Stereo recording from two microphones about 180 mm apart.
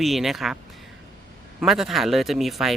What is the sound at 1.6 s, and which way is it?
Speech, centre (ahead or behind).